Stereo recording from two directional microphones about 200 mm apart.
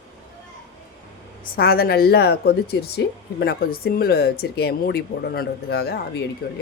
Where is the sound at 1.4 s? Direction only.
50° left (ahead or behind).